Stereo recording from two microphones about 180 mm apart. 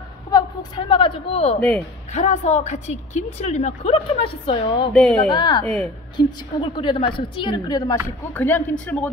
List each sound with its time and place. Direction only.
0.3 s a man's voice: 20° left (ahead or behind)
4.9 s speech: 5° left (ahead or behind)
5.3 s a woman's voice: 25° left (ahead or behind); by 9.1 s 5° left (ahead or behind)